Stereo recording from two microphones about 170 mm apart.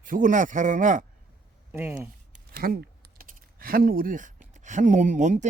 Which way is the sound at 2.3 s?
60° right (ahead or behind).